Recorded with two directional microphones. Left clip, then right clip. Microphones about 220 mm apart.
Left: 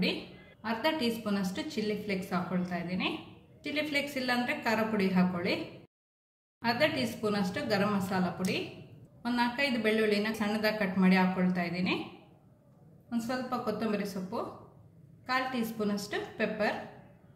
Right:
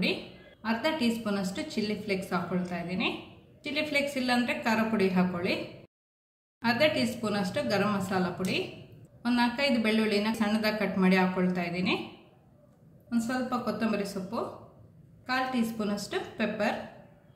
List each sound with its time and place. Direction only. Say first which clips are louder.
0.0 s a woman's voice: right 2 dB; centre (ahead or behind)
6.6 s a woman's voice: right 3 dB; centre (ahead or behind)
13.1 s a woman's voice: right 3 dB; centre (ahead or behind)